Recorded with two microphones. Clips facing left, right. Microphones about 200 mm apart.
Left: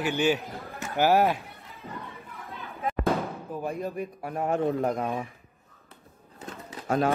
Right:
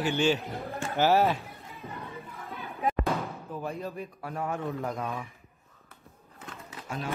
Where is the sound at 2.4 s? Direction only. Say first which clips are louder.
Right 2 dB; 15° right (ahead or behind).